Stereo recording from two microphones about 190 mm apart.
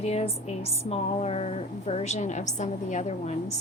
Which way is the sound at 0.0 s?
35° left (ahead or behind).